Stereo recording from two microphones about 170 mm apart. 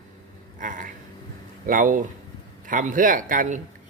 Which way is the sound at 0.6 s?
50° right (ahead or behind).